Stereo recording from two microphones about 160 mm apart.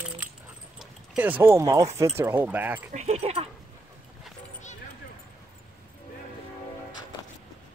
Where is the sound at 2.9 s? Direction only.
40° right (ahead or behind).